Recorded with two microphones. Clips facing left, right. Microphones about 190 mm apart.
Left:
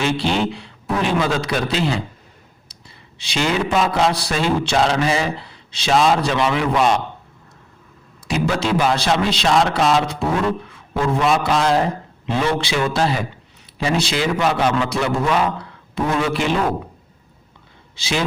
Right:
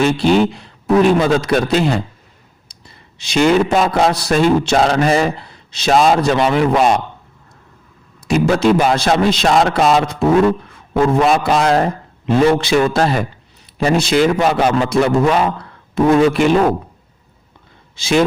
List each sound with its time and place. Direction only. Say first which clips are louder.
0.0 s a man's voice: right 7 dB; 45° right (ahead or behind)
2.7 s a sound: even; 45° right (ahead or behind)
3.2 s a man's voice: right 8 dB; 45° right (ahead or behind)
8.3 s a man's voice: right 7 dB; 45° right (ahead or behind)
17.9 s speech: right 8 dB; 45° right (ahead or behind)